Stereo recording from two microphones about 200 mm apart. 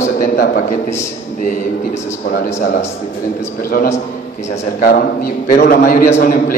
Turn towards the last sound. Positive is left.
turn(degrees=45)  # may be behind; listen again after turning